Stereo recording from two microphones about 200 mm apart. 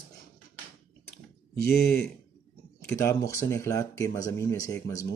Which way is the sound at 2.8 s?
15° left (ahead or behind).